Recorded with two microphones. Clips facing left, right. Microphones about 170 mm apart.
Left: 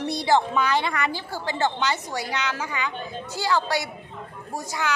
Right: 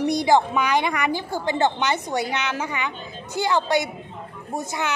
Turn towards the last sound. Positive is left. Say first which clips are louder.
# right 2 dB
turn(degrees=-20)  # may be behind; listen again after turning